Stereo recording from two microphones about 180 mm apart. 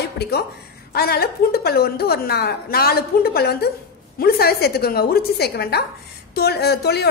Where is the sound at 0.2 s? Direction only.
60° left (ahead or behind).